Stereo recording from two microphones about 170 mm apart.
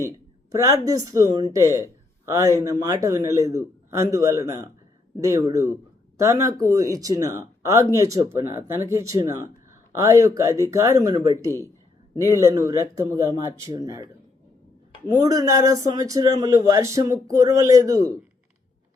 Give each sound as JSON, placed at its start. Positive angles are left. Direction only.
{"t": 0.5, "sound": "a man's voice", "side_deg": -20}